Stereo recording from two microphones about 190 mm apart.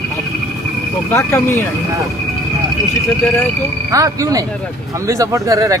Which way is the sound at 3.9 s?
15° right (ahead or behind).